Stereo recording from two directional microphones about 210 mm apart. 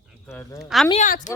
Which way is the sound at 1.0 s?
40° left (ahead or behind).